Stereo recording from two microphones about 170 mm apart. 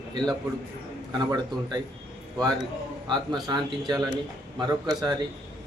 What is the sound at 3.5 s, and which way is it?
Speech, 25° right (ahead or behind).